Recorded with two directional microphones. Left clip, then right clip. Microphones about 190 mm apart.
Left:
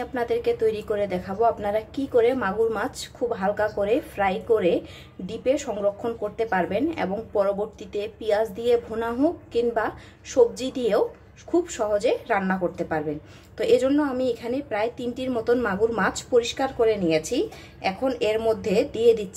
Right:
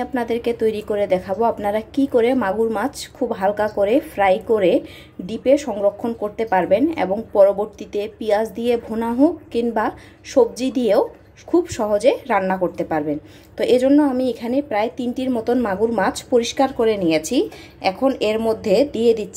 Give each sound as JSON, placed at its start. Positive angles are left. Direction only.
{"t": 0.0, "sound": "a woman's voice", "side_deg": -15}